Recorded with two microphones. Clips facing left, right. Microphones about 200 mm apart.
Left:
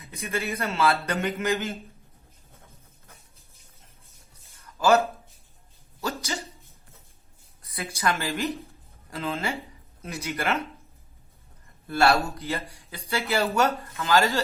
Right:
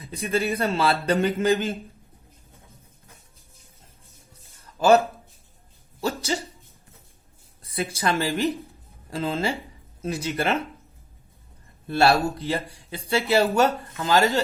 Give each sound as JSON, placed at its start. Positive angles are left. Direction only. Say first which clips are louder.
{"t": 0.0, "sound": "speech", "louder": "right 6 dB", "side_deg": -30}
{"t": 4.6, "sound": "a sound", "louder": "right 3 dB", "side_deg": -30}
{"t": 7.6, "sound": "speech", "louder": "right 2 dB", "side_deg": -25}
{"t": 11.9, "sound": "speech", "louder": "right 2 dB", "side_deg": -30}